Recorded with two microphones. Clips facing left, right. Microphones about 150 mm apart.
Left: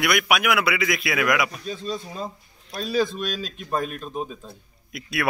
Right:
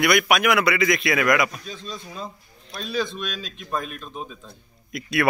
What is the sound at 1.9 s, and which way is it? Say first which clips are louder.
Speech: left 3 dB; 35° left (ahead or behind).